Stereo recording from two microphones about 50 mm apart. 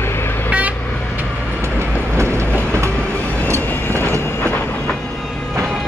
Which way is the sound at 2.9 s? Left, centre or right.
Centre.